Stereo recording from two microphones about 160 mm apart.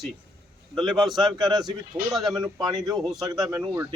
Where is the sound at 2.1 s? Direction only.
Centre (ahead or behind).